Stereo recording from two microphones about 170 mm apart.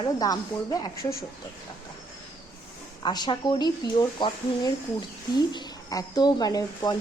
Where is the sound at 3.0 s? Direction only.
25° left (ahead or behind).